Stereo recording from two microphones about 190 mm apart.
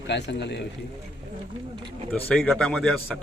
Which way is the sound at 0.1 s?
65° left (ahead or behind).